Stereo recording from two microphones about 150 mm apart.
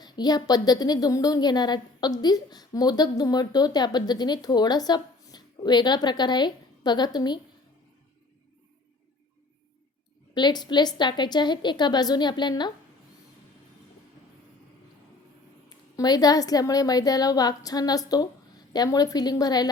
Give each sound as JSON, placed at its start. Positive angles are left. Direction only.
{"t": 0.0, "sound": "a woman's voice", "side_deg": 25}
{"t": 10.3, "sound": "a woman's voice", "side_deg": 30}
{"t": 16.0, "sound": "a woman's voice", "side_deg": 25}